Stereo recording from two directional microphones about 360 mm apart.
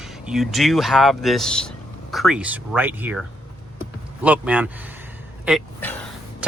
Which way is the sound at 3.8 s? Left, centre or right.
Centre.